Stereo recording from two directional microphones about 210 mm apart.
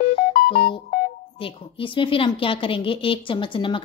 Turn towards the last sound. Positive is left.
turn(degrees=25)  # may be behind; listen again after turning